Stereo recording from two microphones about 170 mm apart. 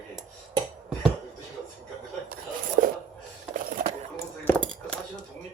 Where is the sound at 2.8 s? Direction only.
55° right (ahead or behind).